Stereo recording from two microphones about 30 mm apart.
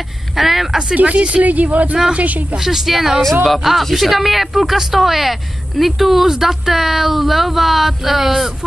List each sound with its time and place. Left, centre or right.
0.4 s speech: centre
0.9 s speech: right
1.4 s speech: right
2.6 s speech: centre
3.2 s speech: centre
3.9 s speech: centre